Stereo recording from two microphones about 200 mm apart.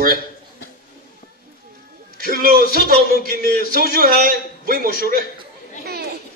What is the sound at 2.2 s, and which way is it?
Speech, 45° right (ahead or behind).